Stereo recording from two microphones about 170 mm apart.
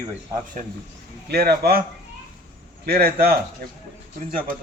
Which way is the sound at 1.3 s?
65° right (ahead or behind).